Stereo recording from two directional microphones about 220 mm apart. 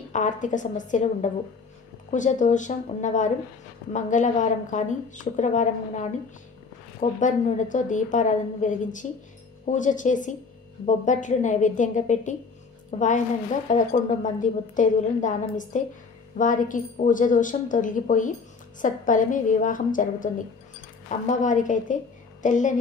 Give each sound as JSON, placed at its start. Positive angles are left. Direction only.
{"t": 0.1, "sound": "a woman's voice", "side_deg": 35}